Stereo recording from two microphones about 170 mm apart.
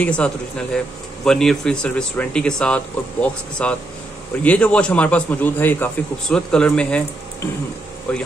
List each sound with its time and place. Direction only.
0.0 s a man's voice: 5° left (ahead or behind)
8.1 s a man's voice: 5° left (ahead or behind)